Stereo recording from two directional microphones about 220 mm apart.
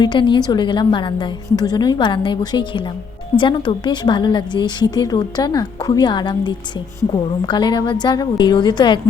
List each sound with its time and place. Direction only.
0.0 s a woman's voice: 20° left (ahead or behind)